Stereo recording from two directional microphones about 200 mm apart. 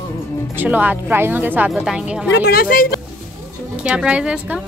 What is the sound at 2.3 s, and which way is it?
Speech, 55° left (ahead or behind).